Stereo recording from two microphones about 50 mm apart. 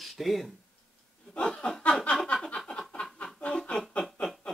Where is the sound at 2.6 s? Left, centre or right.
Centre.